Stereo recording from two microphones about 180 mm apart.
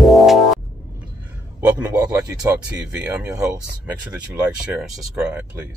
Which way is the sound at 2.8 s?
5° right (ahead or behind).